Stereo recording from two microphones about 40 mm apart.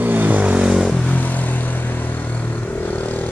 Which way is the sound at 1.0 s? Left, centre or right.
Left.